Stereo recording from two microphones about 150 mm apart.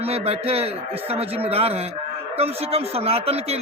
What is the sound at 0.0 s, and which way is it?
A man's voice, 40° right (ahead or behind).